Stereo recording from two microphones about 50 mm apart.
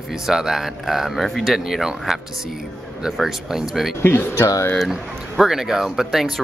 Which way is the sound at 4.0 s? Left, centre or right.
Left.